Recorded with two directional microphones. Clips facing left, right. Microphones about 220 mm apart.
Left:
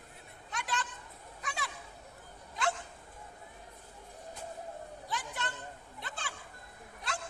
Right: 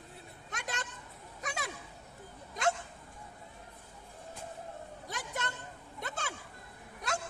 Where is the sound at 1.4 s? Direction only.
45° right (ahead or behind).